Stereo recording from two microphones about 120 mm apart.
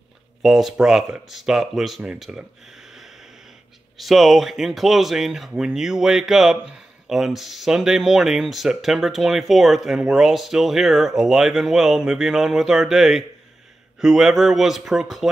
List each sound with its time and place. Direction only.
0.4 s speech: centre (ahead or behind)
4.0 s speech: centre (ahead or behind)